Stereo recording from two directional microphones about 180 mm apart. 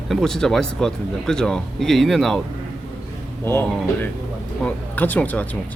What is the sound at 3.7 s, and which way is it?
Speech, centre (ahead or behind).